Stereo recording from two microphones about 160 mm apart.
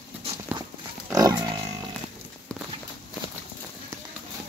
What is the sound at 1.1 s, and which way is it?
Pig, 20° right (ahead or behind).